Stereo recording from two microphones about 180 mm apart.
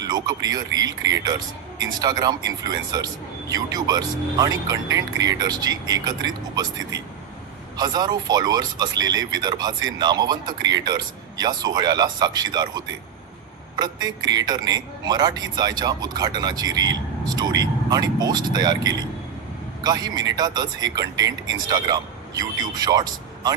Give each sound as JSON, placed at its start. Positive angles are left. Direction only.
{"t": 0.0, "sound": "a man's voice", "side_deg": -20}